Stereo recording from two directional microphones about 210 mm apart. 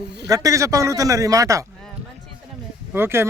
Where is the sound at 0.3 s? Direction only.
15° right (ahead or behind).